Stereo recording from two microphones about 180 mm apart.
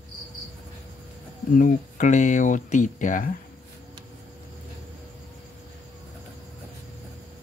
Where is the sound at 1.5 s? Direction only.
45° left (ahead or behind).